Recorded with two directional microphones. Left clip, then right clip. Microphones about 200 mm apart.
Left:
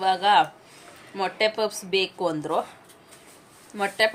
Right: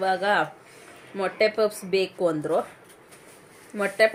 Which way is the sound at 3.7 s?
10° left (ahead or behind).